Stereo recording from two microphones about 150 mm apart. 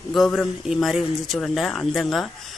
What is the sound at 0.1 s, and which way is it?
Speech, centre (ahead or behind).